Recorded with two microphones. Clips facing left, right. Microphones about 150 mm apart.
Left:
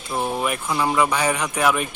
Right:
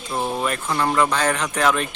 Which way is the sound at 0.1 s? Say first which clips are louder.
Even; 5° left (ahead or behind).